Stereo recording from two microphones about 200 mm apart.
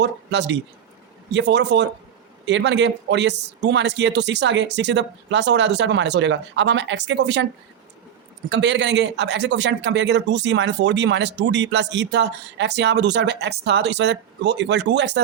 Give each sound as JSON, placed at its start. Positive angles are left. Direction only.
{"t": 0.0, "sound": "speech", "side_deg": -60}
{"t": 8.4, "sound": "speech", "side_deg": -60}